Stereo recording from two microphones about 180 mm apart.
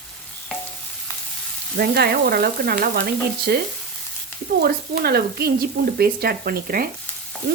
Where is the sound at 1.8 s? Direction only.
60° right (ahead or behind).